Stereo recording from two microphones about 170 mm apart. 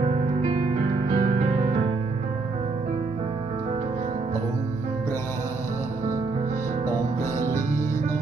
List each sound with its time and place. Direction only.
0.0 s music: 35° right (ahead or behind)